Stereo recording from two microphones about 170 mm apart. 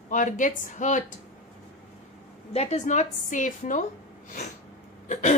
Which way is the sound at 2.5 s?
40° left (ahead or behind).